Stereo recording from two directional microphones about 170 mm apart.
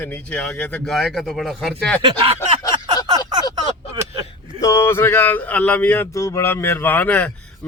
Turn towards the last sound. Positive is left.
turn(degrees=10)  # may be behind; listen again after turning